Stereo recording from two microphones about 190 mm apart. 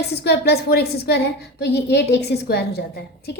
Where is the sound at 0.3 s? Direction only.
55° left (ahead or behind).